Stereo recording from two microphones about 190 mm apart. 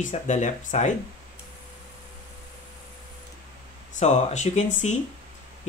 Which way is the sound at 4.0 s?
35° left (ahead or behind).